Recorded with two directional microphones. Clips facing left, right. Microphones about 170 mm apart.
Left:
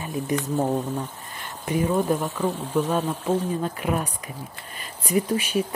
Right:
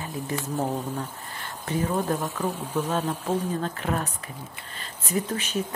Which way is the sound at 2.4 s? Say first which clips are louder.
Left 3 dB; 15° right (ahead or behind).